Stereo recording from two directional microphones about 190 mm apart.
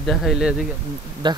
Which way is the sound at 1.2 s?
25° right (ahead or behind).